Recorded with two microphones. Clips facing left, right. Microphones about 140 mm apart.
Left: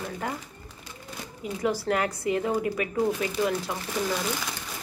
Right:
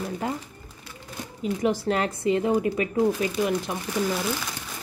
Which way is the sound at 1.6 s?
20° right (ahead or behind).